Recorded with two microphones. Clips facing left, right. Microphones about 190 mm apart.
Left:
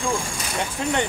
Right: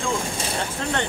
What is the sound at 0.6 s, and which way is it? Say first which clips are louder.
Speech: left 4 dB; 15° left (ahead or behind).